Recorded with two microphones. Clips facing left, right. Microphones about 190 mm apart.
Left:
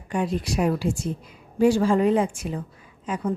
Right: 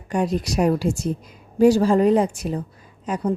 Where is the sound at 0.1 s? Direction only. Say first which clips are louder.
Right 3 dB; 40° right (ahead or behind).